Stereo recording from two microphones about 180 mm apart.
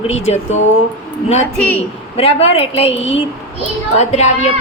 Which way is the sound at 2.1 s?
35° left (ahead or behind).